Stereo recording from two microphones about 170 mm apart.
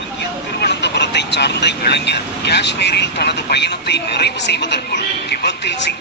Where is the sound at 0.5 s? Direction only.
85° left.